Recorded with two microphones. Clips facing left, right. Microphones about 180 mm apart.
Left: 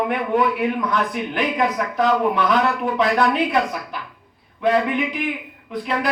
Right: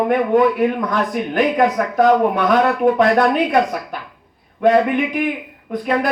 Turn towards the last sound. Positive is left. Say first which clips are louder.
# right 5 dB
turn(degrees=-45)  # may be behind; listen again after turning